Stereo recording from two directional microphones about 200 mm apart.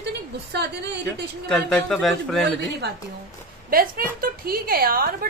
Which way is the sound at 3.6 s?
45° right (ahead or behind).